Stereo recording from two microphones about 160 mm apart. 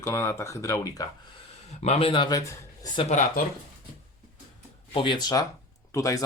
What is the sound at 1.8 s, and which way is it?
Speech, 40° left (ahead or behind).